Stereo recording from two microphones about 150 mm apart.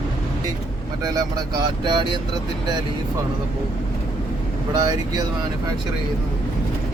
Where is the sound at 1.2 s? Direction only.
25° right (ahead or behind).